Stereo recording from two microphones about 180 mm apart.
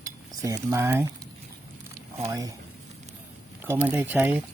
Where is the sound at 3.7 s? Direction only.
10° right (ahead or behind).